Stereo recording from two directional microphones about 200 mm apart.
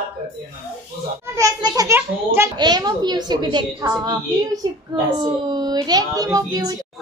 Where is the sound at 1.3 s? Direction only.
15° right (ahead or behind).